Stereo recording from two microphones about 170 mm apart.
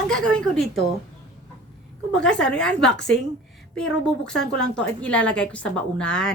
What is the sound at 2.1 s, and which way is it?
A woman's voice, 5° left (ahead or behind).